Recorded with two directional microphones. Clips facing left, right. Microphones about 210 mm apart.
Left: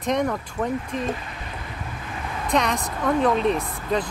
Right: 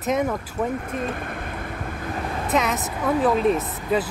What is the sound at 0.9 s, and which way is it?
Speech, 55° right (ahead or behind).